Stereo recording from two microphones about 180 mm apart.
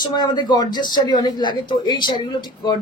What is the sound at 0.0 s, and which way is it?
Speech, 25° left (ahead or behind).